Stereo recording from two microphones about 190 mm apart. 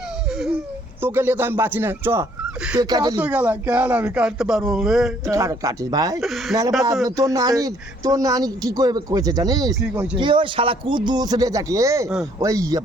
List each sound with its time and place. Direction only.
0.3 s laughter: centre (ahead or behind)
1.0 s speech: 10° right (ahead or behind)
3.2 s speech: 10° right (ahead or behind)
5.2 s speech: 15° right (ahead or behind)
6.1 s speech: centre (ahead or behind)
7.0 s speech: 20° right (ahead or behind)
9.8 s speech: 5° right (ahead or behind)
10.2 s speech: 25° right (ahead or behind)